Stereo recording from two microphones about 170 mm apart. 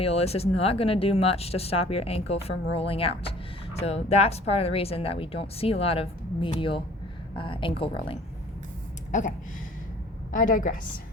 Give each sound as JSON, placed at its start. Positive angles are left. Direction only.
{"t": 0.0, "sound": "speech", "side_deg": 35}
{"t": 10.3, "sound": "a woman's voice", "side_deg": 50}